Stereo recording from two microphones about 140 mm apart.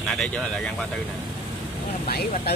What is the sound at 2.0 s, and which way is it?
Speech, 90° left.